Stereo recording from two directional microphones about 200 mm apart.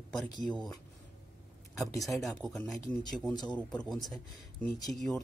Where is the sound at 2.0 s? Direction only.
Centre (ahead or behind).